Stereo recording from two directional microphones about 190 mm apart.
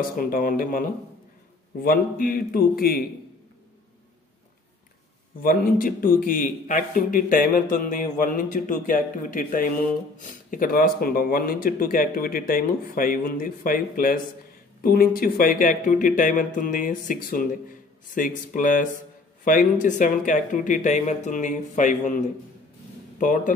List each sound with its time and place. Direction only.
0.2 s a man's voice: 50° left (ahead or behind)
5.4 s a man's voice: 50° left (ahead or behind)